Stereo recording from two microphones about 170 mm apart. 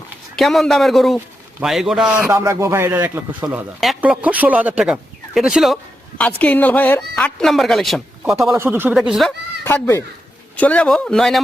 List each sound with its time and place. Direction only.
0.3 s a man's voice: centre (ahead or behind)
8.5 s speech: 15° right (ahead or behind)
9.6 s a man's voice: 15° left (ahead or behind)